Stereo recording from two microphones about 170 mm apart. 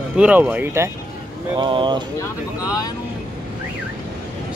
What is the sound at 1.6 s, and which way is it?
Speech, 30° right (ahead or behind).